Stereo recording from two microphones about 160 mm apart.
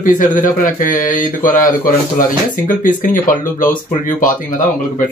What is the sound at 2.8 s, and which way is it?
Speech, 55° left (ahead or behind).